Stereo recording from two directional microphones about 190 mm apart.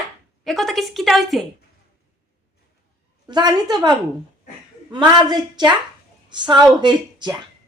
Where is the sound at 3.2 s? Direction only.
20° right (ahead or behind).